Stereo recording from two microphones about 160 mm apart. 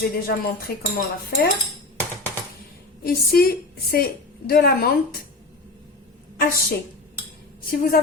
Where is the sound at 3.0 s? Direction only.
70° left (ahead or behind).